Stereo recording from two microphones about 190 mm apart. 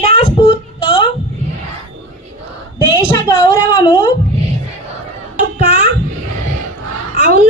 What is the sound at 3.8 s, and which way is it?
Speech, 25° left (ahead or behind).